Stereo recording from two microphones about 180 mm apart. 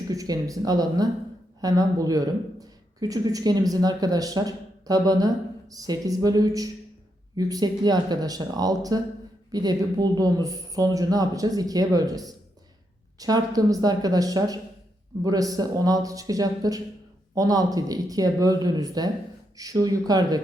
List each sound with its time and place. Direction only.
0.1 s a woman's voice: 20° right (ahead or behind)